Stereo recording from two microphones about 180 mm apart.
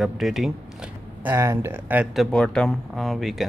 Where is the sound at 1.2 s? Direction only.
15° right (ahead or behind).